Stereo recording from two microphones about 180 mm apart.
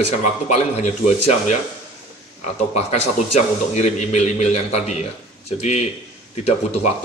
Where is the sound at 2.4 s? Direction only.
35° left (ahead or behind).